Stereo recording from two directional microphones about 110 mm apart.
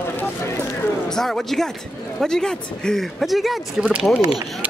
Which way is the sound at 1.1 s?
5° left (ahead or behind).